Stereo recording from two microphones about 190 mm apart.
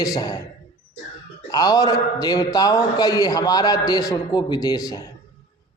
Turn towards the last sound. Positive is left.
turn(degrees=20)  # may be behind; listen again after turning